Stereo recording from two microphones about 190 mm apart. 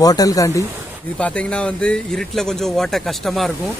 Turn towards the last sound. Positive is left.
turn(degrees=0)  # may be behind; listen again after turning